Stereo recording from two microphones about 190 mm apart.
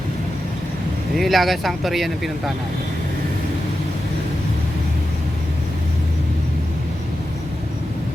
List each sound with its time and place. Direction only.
1.1 s speech: centre (ahead or behind)